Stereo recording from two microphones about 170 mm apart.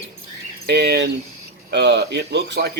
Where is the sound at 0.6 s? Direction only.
75° right (ahead or behind).